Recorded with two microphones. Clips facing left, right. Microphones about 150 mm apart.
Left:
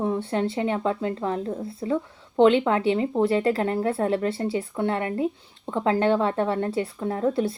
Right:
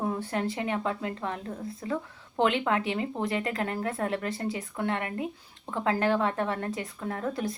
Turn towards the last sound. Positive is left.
turn(degrees=30)  # may be behind; listen again after turning